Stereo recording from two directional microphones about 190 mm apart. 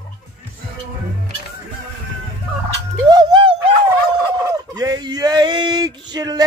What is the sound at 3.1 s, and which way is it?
Music, 25° right (ahead or behind).